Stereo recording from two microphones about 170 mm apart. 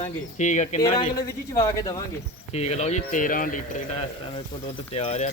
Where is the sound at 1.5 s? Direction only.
20° left (ahead or behind).